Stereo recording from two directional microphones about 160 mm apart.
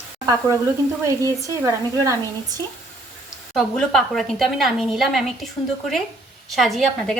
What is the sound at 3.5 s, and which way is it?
A woman's voice, centre (ahead or behind).